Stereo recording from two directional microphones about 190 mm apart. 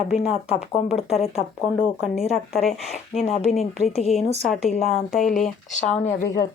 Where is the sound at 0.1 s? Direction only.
35° left (ahead or behind).